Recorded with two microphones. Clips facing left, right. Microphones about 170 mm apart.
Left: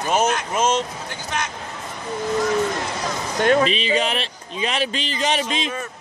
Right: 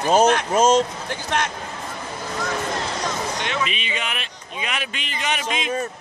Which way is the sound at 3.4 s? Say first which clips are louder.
Left 14 dB; 45° left (ahead or behind).